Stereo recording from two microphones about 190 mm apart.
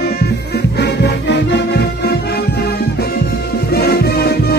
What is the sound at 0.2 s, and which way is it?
Music, 60° left (ahead or behind).